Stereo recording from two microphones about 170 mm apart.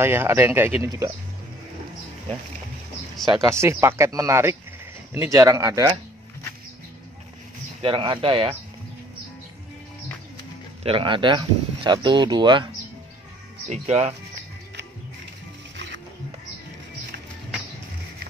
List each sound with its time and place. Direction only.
0.0 s speech: 15° right (ahead or behind)
3.4 s speech: 15° right (ahead or behind)
7.8 s speech: 30° right (ahead or behind)
10.8 s speech: 30° right (ahead or behind)
13.7 s speech: 40° right (ahead or behind)
15.7 s music: 90° right